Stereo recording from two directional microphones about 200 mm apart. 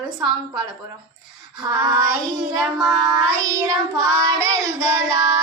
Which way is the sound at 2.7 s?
Centre (ahead or behind).